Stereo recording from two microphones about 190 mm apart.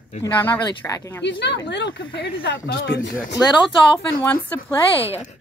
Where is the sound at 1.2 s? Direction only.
65° left (ahead or behind).